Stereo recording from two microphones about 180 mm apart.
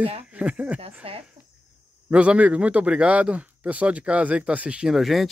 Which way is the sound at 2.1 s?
5° right (ahead or behind).